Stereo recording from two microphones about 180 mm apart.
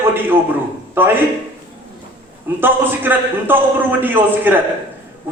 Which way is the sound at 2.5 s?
10° right (ahead or behind).